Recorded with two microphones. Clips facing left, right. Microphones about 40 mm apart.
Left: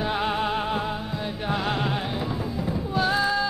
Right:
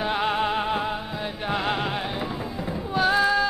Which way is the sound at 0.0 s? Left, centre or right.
Centre.